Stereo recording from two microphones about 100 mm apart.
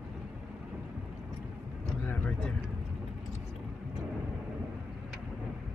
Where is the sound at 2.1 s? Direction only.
15° left (ahead or behind).